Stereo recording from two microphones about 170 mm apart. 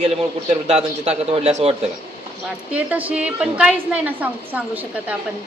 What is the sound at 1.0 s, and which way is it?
Speech, 35° right (ahead or behind).